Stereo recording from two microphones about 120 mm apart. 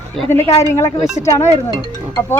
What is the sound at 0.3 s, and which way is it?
Speech, 65° left (ahead or behind).